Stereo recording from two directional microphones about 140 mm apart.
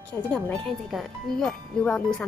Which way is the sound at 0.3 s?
5° left (ahead or behind).